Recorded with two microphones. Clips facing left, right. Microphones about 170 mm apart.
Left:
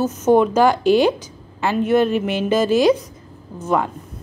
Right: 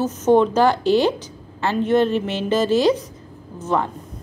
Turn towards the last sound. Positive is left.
turn(degrees=10)  # may be behind; listen again after turning